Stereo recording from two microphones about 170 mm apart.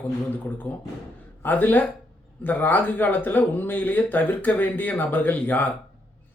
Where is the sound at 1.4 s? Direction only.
10° left (ahead or behind).